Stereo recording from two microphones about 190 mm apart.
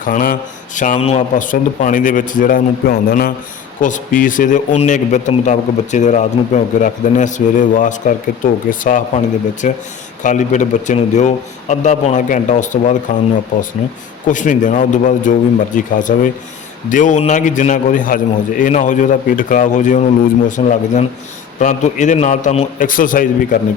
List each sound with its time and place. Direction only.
0.0 s a man's voice: 45° left (ahead or behind)
14.3 s a man's voice: 45° left (ahead or behind)